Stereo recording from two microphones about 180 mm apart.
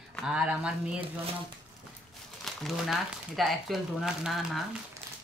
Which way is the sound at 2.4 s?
Centre (ahead or behind).